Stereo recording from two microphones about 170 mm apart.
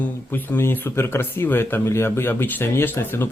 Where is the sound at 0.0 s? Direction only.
10° left (ahead or behind).